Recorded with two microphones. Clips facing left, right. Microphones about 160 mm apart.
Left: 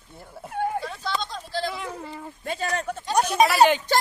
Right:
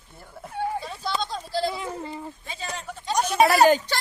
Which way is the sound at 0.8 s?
5° right (ahead or behind).